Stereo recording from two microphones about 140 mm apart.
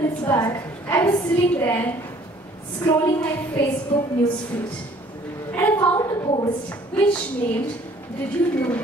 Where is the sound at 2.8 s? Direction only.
30° left (ahead or behind).